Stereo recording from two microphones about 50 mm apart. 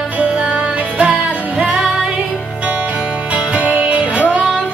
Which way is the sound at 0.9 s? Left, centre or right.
Right.